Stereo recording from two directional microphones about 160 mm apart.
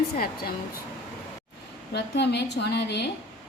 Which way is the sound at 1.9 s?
90° left.